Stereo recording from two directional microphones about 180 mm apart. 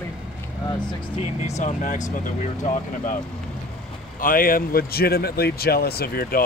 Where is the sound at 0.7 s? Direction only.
25° left (ahead or behind).